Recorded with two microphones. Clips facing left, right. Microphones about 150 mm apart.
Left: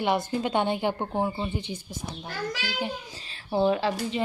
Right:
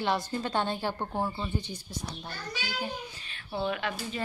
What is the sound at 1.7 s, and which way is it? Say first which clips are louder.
Speech: left 1 dB; 50° left (ahead or behind).